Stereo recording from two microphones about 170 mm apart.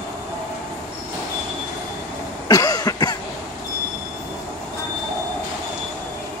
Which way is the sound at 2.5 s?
20° left (ahead or behind).